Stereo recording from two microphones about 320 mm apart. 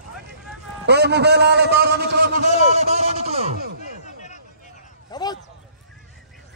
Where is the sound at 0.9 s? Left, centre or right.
Right.